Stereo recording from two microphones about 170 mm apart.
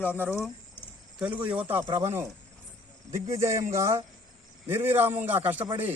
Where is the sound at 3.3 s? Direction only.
20° right (ahead or behind).